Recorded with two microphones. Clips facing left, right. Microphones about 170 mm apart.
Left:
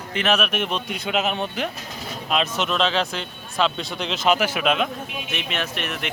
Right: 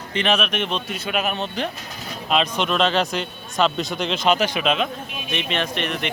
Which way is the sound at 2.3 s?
5° left (ahead or behind).